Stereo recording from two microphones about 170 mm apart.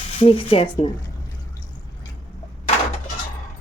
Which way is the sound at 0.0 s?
40° left (ahead or behind).